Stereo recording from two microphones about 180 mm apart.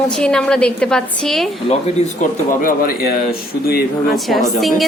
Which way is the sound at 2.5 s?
50° left (ahead or behind).